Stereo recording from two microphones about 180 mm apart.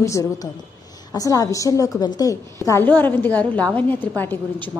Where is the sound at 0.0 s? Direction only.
20° left (ahead or behind).